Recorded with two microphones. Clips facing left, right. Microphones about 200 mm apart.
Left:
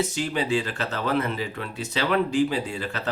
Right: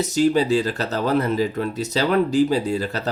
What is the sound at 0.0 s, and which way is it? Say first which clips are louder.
Speech: right 8 dB; 40° right (ahead or behind).